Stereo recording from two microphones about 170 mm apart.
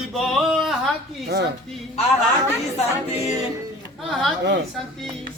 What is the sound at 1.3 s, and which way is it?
Speech, 75° right (ahead or behind).